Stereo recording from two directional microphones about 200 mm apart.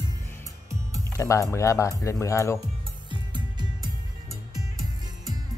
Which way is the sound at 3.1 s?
25° right (ahead or behind).